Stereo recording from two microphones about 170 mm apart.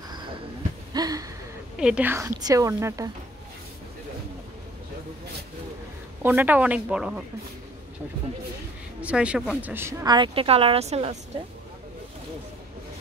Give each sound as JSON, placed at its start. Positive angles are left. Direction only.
{"t": 0.9, "sound": "a sound", "side_deg": -20}
{"t": 1.8, "sound": "speech", "side_deg": -5}
{"t": 6.2, "sound": "speech", "side_deg": -10}
{"t": 9.0, "sound": "speech", "side_deg": -5}
{"t": 10.0, "sound": "speech", "side_deg": -25}